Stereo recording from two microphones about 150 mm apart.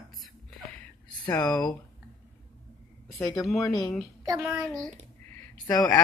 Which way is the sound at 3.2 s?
20° left (ahead or behind).